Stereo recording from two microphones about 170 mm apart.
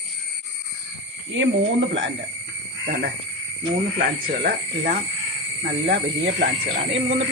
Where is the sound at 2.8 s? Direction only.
60° right (ahead or behind).